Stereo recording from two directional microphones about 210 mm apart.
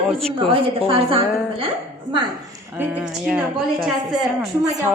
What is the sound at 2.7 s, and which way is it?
A woman's voice, 5° right (ahead or behind).